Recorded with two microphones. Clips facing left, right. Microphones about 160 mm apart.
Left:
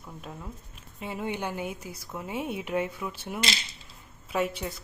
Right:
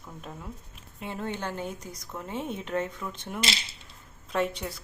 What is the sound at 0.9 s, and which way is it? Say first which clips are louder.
Speech: left 1 dB; 5° left (ahead or behind).